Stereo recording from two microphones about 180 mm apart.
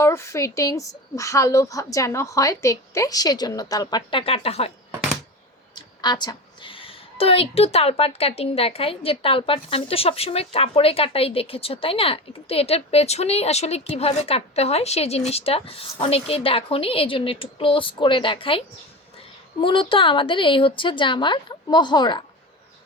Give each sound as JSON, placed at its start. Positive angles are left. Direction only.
{"t": 0.0, "sound": "a woman's voice", "side_deg": 15}
{"t": 6.0, "sound": "a woman's voice", "side_deg": 25}
{"t": 19.6, "sound": "speech", "side_deg": 30}